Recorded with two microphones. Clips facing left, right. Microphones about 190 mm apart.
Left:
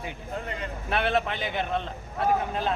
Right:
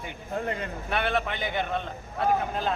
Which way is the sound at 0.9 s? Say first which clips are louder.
Left 2 dB; centre (ahead or behind).